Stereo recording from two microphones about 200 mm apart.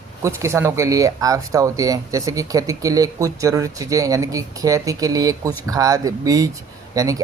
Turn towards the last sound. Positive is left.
turn(degrees=-15)  # may be behind; listen again after turning